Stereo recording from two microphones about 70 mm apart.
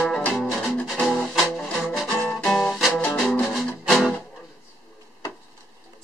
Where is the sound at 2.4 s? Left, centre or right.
Centre.